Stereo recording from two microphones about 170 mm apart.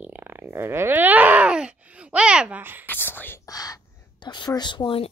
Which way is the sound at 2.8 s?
10° left (ahead or behind).